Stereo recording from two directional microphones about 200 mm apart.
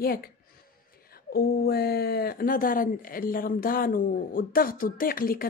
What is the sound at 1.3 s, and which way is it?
Speech, 50° left (ahead or behind).